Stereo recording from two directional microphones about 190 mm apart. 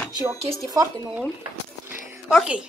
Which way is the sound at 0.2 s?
15° right (ahead or behind).